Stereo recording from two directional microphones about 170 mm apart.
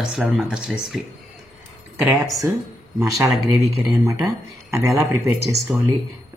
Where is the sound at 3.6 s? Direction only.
20° right (ahead or behind).